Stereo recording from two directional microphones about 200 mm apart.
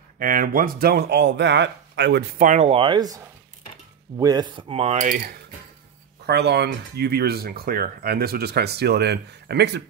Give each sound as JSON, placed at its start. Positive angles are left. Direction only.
{"t": 0.2, "sound": "speech", "side_deg": -45}
{"t": 2.4, "sound": "speech", "side_deg": -35}
{"t": 6.2, "sound": "speech", "side_deg": -55}